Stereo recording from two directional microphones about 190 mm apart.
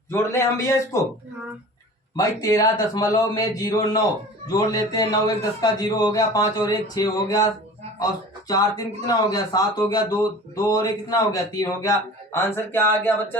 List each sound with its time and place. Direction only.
0.1 s speech: 15° left (ahead or behind)
2.1 s a man's voice: 20° left (ahead or behind)
9.0 s speech: 20° left (ahead or behind)